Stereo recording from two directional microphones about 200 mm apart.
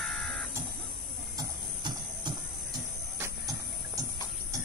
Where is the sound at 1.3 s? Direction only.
25° right (ahead or behind).